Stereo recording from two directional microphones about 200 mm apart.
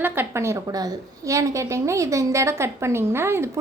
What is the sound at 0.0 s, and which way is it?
A woman's voice, 10° right (ahead or behind).